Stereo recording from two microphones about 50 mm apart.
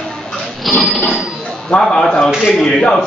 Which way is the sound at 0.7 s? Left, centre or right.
Centre.